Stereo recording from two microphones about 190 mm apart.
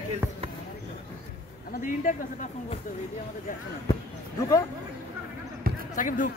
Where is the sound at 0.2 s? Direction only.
15° right (ahead or behind).